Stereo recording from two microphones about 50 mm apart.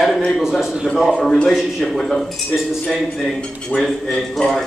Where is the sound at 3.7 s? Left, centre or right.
Centre.